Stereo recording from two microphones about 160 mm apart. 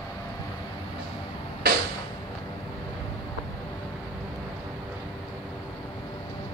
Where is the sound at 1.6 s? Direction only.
65° right (ahead or behind).